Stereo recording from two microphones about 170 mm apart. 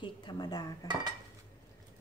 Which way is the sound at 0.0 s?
25° left (ahead or behind).